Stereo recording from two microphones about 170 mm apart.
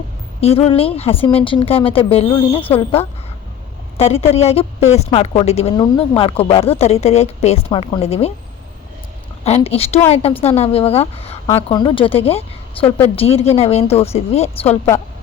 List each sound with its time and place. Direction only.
0.4 s a woman's voice: 35° left (ahead or behind)
9.4 s a woman's voice: 35° left (ahead or behind)
11.4 s a woman's voice: 20° left (ahead or behind); by 14.8 s 35° left (ahead or behind)